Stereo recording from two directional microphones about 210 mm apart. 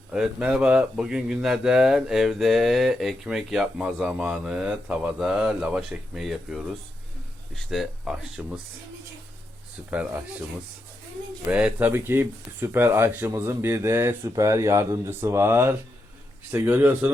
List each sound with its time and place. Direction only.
0.1 s speech: 5° right (ahead or behind)
9.9 s speech: 5° right (ahead or behind)
11.4 s speech: 5° right (ahead or behind)